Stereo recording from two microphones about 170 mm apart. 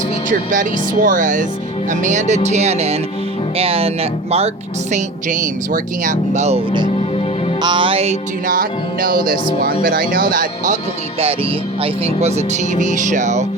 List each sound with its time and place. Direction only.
0.3 s speech: 50° right (ahead or behind)
7.6 s speech: 30° right (ahead or behind)
8.4 s speech: 55° right (ahead or behind)
11.8 s speech: 35° right (ahead or behind)
12.7 s speech: 45° right (ahead or behind)